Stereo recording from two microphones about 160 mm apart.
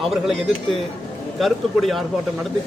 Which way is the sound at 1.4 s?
Centre (ahead or behind).